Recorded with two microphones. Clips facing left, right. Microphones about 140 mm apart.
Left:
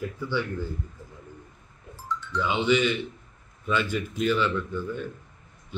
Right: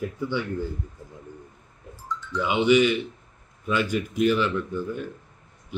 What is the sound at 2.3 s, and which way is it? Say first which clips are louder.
Speech: right 4 dB; 15° right (ahead or behind).